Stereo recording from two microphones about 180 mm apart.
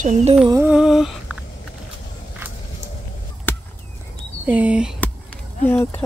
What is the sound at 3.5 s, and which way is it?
Chop, 10° left (ahead or behind).